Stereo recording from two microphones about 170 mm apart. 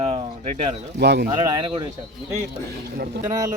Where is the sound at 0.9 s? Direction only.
80° right.